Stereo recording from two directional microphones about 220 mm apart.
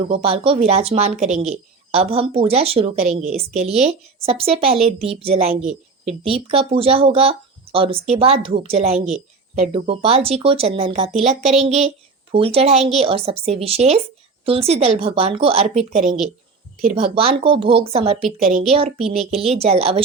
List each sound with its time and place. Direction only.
0.0 s speech: 25° right (ahead or behind)
3.2 s a woman's voice: 5° right (ahead or behind)
3.6 s speech: 30° right (ahead or behind)
9.0 s a woman's voice: centre (ahead or behind)
9.6 s a woman's voice: 25° right (ahead or behind)